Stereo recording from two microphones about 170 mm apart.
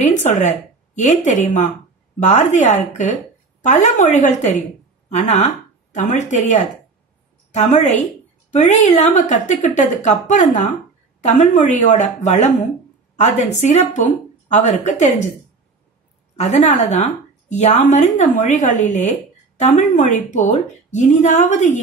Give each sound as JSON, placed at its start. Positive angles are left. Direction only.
{"t": 0.0, "sound": "a woman's voice", "side_deg": 45}
{"t": 16.3, "sound": "a woman's voice", "side_deg": 40}